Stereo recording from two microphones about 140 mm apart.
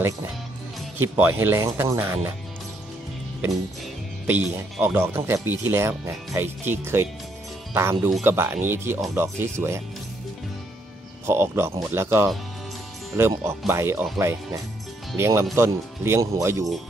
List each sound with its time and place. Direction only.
1.1 s speech: 15° right (ahead or behind)
4.7 s speech: 15° right (ahead or behind)
11.2 s speech: 20° right (ahead or behind)